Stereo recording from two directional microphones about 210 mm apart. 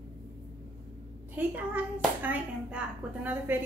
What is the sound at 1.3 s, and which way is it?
A woman's voice, 10° right (ahead or behind).